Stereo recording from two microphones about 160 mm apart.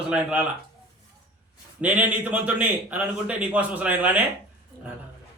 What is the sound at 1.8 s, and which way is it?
A man's voice, 10° right (ahead or behind).